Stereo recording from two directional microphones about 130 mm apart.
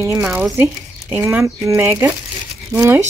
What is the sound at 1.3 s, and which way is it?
Speech, 20° right (ahead or behind).